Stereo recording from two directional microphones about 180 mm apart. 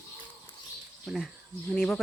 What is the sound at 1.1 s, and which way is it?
Speech, centre (ahead or behind).